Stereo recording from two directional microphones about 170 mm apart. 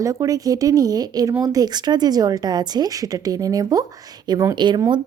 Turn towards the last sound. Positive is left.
turn(degrees=-25)  # may be behind; listen again after turning